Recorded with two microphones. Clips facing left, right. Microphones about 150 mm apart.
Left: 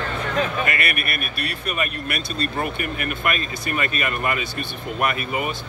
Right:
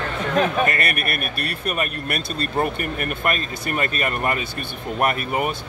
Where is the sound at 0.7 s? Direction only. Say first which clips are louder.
Right 1 dB; 40° right (ahead or behind).